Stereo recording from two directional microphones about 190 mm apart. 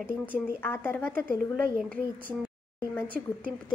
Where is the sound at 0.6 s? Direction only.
10° left (ahead or behind).